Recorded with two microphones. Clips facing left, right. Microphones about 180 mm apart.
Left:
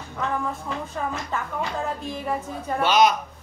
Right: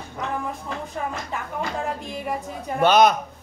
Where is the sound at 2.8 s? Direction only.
55° right (ahead or behind).